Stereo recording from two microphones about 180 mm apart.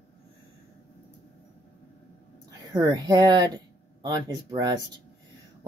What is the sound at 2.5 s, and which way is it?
Speech, 20° right (ahead or behind).